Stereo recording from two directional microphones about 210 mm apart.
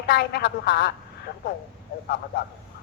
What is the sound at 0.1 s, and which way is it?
Speech, 50° left (ahead or behind).